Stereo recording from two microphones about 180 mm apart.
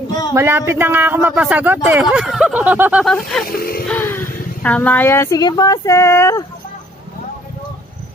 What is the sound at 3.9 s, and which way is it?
A woman's voice, 10° left (ahead or behind).